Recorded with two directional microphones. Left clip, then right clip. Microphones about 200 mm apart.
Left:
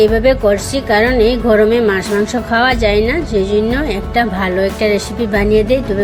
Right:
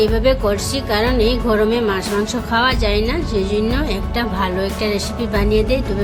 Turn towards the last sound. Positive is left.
turn(degrees=20)  # may be behind; listen again after turning